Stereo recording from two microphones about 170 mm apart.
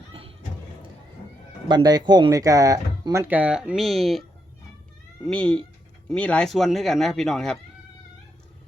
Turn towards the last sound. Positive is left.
turn(degrees=0)  # may be behind; listen again after turning